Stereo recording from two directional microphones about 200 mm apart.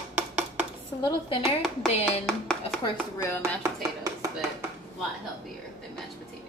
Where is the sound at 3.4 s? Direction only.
15° right (ahead or behind).